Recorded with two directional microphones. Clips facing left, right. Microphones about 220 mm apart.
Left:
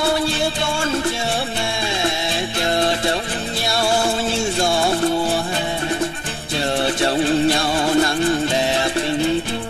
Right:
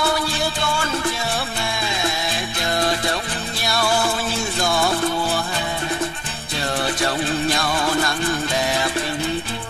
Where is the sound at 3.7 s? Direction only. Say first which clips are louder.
Left 1 dB; 25° left (ahead or behind).